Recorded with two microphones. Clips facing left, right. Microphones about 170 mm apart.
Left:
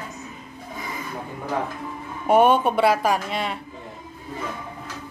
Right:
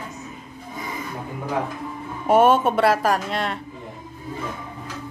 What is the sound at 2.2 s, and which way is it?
Speech, centre (ahead or behind).